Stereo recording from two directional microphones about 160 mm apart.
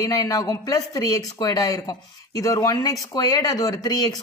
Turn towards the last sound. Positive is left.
turn(degrees=25)  # may be behind; listen again after turning